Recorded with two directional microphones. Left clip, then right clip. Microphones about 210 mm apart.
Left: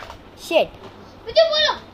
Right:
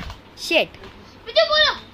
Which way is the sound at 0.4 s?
25° right (ahead or behind).